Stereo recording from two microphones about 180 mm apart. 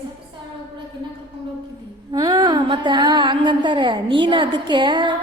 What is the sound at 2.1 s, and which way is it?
A woman's voice, 20° right (ahead or behind).